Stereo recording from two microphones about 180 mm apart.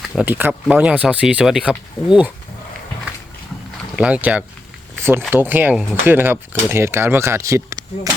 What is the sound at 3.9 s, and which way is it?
Speech, 5° right (ahead or behind).